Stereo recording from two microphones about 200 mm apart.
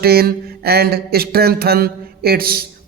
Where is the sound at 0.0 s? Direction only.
50° right (ahead or behind).